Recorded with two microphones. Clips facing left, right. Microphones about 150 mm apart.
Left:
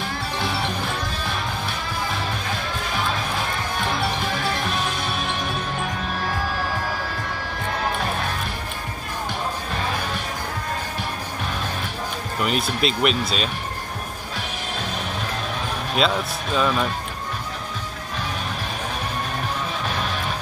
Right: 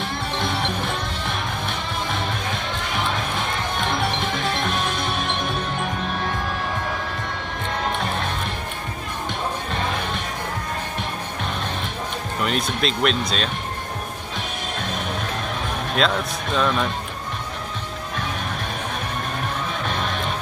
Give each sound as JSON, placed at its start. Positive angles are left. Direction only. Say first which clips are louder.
{"t": 0.4, "sound": "music", "louder": "right 1 dB", "side_deg": 10}
{"t": 4.6, "sound": "music", "louder": "right 1 dB", "side_deg": 10}
{"t": 12.4, "sound": "speech", "louder": "left 1 dB", "side_deg": 5}
{"t": 15.9, "sound": "speech", "louder": "even", "side_deg": 5}